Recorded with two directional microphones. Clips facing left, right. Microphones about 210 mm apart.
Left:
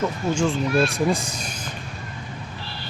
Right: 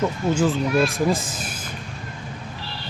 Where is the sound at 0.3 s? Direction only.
Centre (ahead or behind).